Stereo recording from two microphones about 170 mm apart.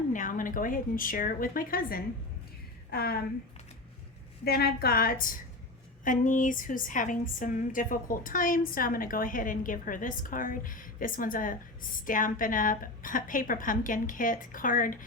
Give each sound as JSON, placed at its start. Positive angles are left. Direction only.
{"t": 0.1, "sound": "a woman's voice", "side_deg": 50}
{"t": 4.4, "sound": "a woman's voice", "side_deg": 65}